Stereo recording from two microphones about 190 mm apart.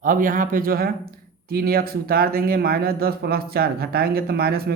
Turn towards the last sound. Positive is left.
turn(degrees=-55)  # may be behind; listen again after turning